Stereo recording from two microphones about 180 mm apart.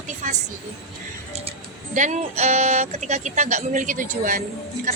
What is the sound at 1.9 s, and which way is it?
A woman's voice, 40° right (ahead or behind).